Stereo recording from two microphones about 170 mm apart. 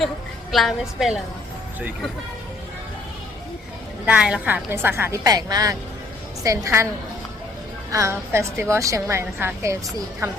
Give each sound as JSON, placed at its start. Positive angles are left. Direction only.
{"t": 0.5, "sound": "a woman's voice", "side_deg": 0}
{"t": 4.0, "sound": "a woman's voice", "side_deg": -5}
{"t": 7.9, "sound": "a woman's voice", "side_deg": -20}